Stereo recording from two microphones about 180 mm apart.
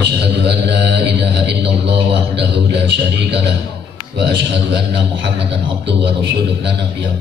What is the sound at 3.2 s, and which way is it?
Speech, 70° right (ahead or behind).